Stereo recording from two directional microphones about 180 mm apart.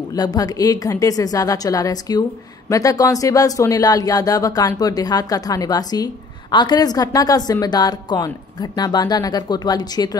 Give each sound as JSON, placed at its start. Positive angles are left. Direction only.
{"t": 0.1, "sound": "speech", "side_deg": 20}